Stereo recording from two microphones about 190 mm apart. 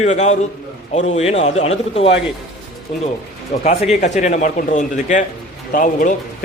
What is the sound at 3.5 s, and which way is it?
A man's voice, 40° left (ahead or behind).